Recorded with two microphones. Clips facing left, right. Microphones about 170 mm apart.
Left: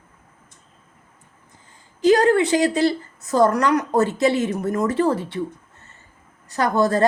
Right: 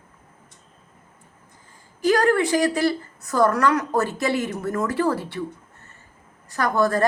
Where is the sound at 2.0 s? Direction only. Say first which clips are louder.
Left 3 dB; 20° left (ahead or behind).